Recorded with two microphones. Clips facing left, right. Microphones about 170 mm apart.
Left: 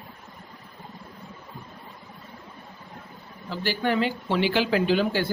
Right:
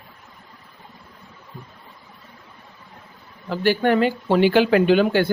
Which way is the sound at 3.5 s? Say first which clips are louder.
Right 7 dB; 55° right (ahead or behind).